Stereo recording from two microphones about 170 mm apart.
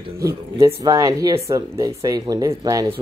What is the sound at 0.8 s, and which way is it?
Speech, 20° right (ahead or behind).